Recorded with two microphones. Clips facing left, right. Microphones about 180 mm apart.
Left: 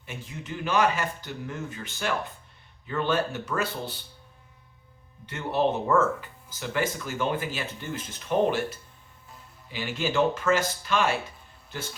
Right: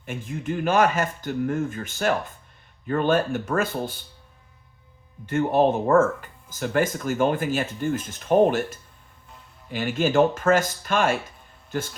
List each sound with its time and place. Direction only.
0.0 s speech: 50° right (ahead or behind)
5.2 s speech: 50° right (ahead or behind)